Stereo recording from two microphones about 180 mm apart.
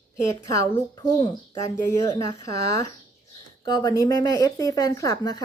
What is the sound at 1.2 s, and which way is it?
Speech, 20° left (ahead or behind).